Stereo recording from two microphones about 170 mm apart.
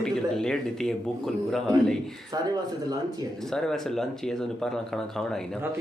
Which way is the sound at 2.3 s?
20° right (ahead or behind).